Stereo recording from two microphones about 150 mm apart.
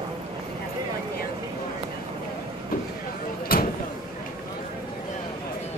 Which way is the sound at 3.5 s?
80° left.